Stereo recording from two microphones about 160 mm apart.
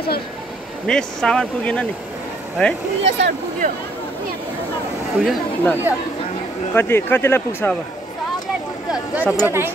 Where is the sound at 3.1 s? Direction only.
90° right.